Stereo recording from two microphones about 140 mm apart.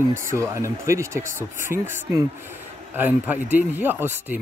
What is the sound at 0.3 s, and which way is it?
Speech, 20° right (ahead or behind).